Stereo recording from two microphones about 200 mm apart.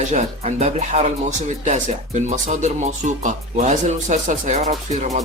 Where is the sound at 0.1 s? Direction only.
35° right (ahead or behind).